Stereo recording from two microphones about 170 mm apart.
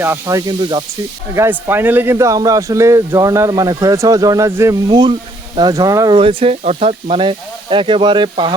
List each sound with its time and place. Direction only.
0.0 s speech: 15° right (ahead or behind)
4.9 s speech: 25° right (ahead or behind)
6.1 s speech: 35° right (ahead or behind)